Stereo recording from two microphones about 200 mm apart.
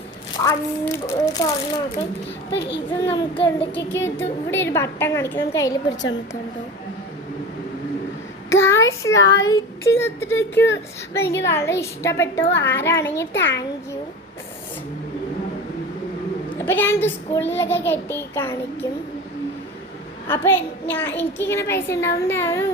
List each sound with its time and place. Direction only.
0.3 s a child's voice: 15° left (ahead or behind)
2.6 s a child's voice: 25° left (ahead or behind)
3.9 s a child's voice: 10° left (ahead or behind)
8.4 s a child's voice: 15° left (ahead or behind)
16.6 s a child's voice: 10° left (ahead or behind)
20.2 s a child's voice: 10° left (ahead or behind)